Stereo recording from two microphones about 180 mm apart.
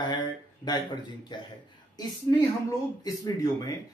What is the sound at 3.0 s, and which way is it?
Speech, 20° left (ahead or behind).